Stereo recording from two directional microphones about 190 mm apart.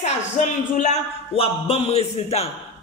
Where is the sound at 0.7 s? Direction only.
40° left (ahead or behind).